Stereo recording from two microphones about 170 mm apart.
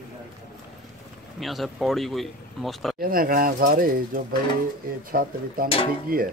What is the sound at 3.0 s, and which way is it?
Speech, 55° right (ahead or behind).